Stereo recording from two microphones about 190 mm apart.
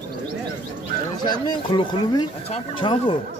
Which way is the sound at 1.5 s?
25° left (ahead or behind).